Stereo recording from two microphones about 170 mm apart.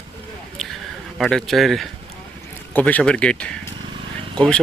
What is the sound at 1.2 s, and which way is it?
Speech, centre (ahead or behind).